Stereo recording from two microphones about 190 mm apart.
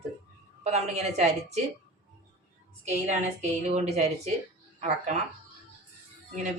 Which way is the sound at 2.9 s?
35° right (ahead or behind).